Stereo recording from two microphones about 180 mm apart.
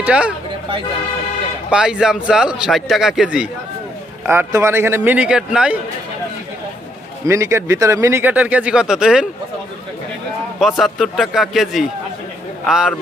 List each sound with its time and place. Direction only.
0.0 s a man's voice: 5° right (ahead or behind)
1.7 s a man's voice: 5° right (ahead or behind)
7.3 s a man's voice: 15° right (ahead or behind)
10.6 s a man's voice: centre (ahead or behind)